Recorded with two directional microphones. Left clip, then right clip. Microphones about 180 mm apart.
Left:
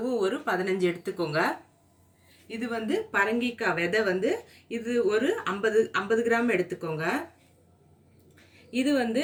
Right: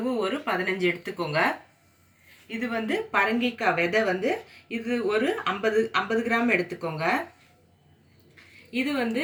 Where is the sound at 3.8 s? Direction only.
70° right (ahead or behind).